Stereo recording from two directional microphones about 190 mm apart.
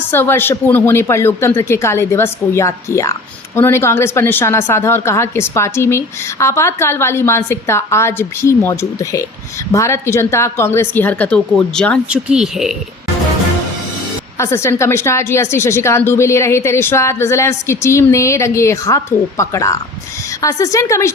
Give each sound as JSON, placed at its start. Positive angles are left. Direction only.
{"t": 0.1, "sound": "speech", "side_deg": 10}
{"t": 14.3, "sound": "speech", "side_deg": 15}